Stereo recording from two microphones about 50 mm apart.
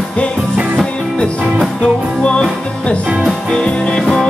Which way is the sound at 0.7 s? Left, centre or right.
Centre.